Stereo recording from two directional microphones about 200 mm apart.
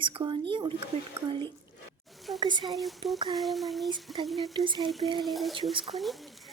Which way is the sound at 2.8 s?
Centre (ahead or behind).